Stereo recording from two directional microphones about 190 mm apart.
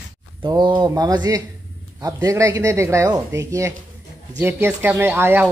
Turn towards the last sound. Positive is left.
turn(degrees=-10)  # may be behind; listen again after turning